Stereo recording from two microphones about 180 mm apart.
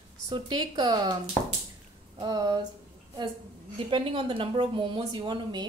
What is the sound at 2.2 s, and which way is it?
Speech, 20° right (ahead or behind).